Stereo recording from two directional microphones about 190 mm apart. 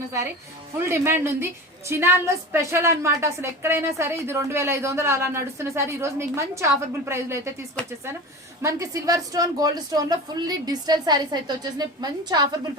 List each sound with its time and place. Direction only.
0.9 s a woman's voice: 15° right (ahead or behind)
8.6 s a woman's voice: 15° right (ahead or behind)